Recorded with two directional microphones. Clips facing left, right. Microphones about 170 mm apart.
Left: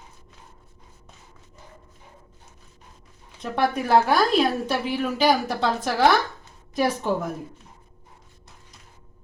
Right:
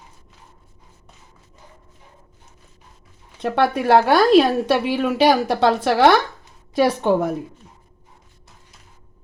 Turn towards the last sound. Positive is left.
turn(degrees=-75)  # may be behind; listen again after turning